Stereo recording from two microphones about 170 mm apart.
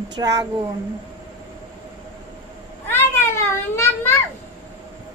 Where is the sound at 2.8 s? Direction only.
15° left (ahead or behind).